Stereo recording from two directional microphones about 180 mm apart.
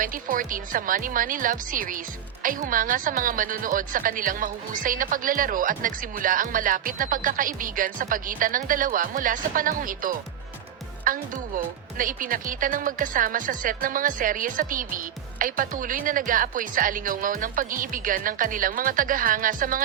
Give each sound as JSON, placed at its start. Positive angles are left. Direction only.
{"t": 0.0, "sound": "speech", "side_deg": -50}